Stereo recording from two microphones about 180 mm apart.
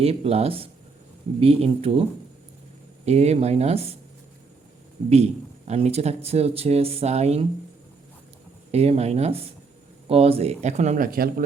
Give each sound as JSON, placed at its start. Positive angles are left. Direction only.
{"t": 0.0, "sound": "speech", "side_deg": -35}
{"t": 3.1, "sound": "speech", "side_deg": -35}
{"t": 5.0, "sound": "speech", "side_deg": -35}
{"t": 8.7, "sound": "speech", "side_deg": -35}